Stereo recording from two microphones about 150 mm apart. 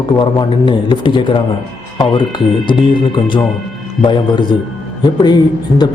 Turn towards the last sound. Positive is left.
turn(degrees=30)  # may be behind; listen again after turning